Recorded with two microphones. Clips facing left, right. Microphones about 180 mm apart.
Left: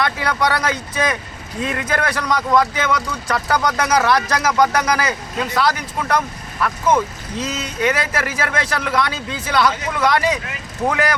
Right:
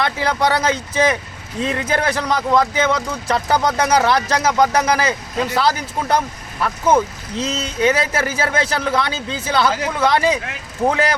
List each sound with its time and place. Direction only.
0.0 s speech: 25° right (ahead or behind)